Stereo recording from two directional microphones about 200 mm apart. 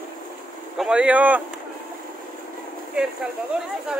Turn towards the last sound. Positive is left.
turn(degrees=-5)  # may be behind; listen again after turning